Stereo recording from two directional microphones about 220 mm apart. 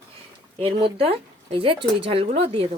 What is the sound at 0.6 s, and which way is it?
A woman's voice, 25° right (ahead or behind).